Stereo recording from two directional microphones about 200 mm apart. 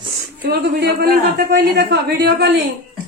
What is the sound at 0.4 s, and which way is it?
Speech, 55° right (ahead or behind).